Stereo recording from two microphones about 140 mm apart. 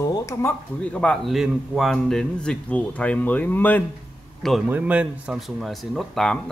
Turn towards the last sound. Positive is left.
turn(degrees=0)  # may be behind; listen again after turning